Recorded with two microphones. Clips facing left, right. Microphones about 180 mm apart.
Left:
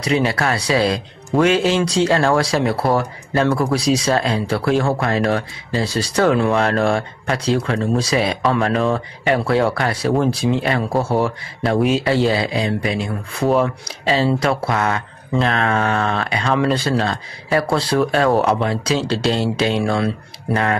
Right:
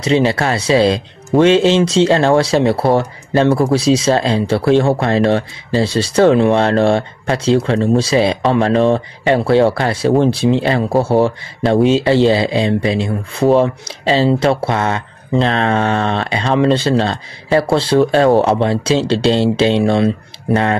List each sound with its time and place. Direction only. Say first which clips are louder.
0.0 s speech: right 4 dB; 25° right (ahead or behind)